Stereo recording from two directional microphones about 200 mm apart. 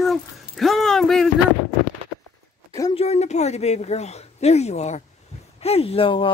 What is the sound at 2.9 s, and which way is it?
Speech, 35° left (ahead or behind).